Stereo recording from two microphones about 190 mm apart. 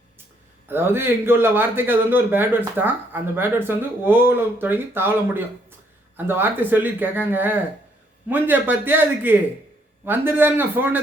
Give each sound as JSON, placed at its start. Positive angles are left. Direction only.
{"t": 0.7, "sound": "speech", "side_deg": -10}